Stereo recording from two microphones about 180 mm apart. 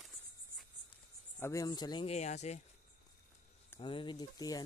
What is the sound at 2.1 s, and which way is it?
Speech, 40° left (ahead or behind).